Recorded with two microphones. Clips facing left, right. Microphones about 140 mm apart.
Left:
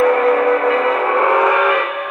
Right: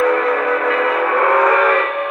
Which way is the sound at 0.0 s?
30° left (ahead or behind).